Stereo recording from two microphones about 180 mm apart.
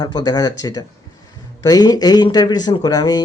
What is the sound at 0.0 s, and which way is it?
Speech, 25° left (ahead or behind).